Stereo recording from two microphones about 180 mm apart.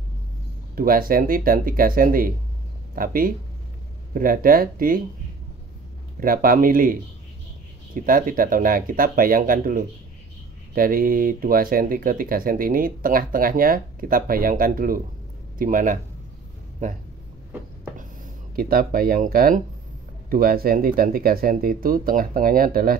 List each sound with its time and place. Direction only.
0.7 s speech: 55° right (ahead or behind)
6.1 s speech: 55° right (ahead or behind)
18.6 s speech: 55° right (ahead or behind)